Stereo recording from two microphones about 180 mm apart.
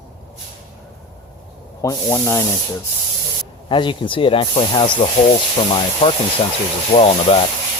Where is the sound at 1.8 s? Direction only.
15° left (ahead or behind).